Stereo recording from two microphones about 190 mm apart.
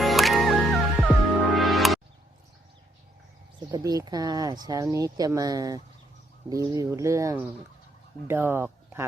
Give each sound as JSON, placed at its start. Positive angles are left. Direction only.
{"t": 0.0, "sound": "music", "side_deg": 0}
{"t": 3.7, "sound": "speech", "side_deg": -20}